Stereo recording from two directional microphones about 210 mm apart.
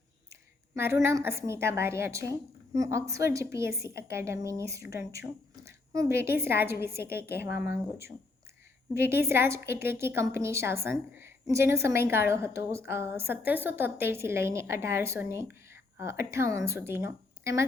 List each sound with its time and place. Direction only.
0.7 s a woman's voice: 10° right (ahead or behind)